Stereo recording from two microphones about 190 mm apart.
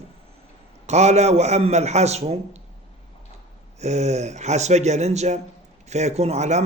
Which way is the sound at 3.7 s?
35° right (ahead or behind).